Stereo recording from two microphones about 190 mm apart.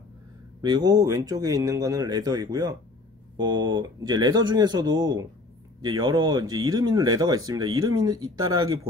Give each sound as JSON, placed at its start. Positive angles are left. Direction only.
{"t": 0.6, "sound": "speech", "side_deg": -20}